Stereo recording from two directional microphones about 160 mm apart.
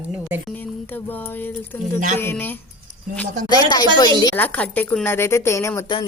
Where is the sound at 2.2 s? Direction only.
10° left (ahead or behind).